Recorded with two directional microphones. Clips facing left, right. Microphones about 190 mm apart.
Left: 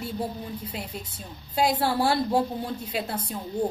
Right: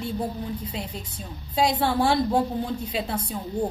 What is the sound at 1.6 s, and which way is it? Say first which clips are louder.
Speech: right 1 dB; 5° left (ahead or behind).